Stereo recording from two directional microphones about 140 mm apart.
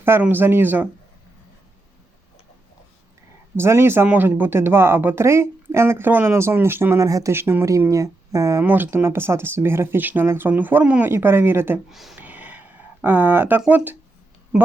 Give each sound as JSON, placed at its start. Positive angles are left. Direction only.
{"t": 0.0, "sound": "speech", "side_deg": -15}
{"t": 3.6, "sound": "speech", "side_deg": -15}
{"t": 11.9, "sound": "speech", "side_deg": 0}
{"t": 12.2, "sound": "a sound", "side_deg": -10}
{"t": 13.6, "sound": "speech", "side_deg": -10}